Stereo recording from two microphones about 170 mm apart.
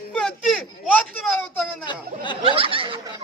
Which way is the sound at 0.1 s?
5° left (ahead or behind).